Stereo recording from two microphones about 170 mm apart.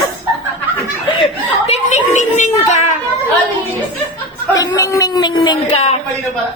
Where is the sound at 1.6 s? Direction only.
40° left (ahead or behind).